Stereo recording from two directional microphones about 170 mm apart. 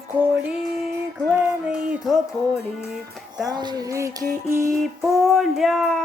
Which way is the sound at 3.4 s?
25° right (ahead or behind).